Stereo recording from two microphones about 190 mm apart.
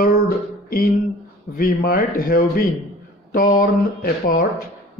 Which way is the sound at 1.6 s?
50° left (ahead or behind).